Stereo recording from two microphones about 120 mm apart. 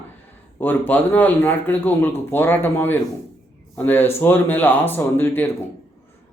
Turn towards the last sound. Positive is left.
turn(degrees=20)  # may be behind; listen again after turning